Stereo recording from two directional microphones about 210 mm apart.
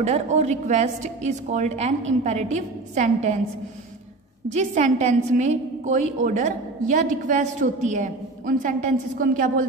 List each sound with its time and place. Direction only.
0.0 s a woman's voice: 30° right (ahead or behind)
4.5 s a woman's voice: 30° right (ahead or behind)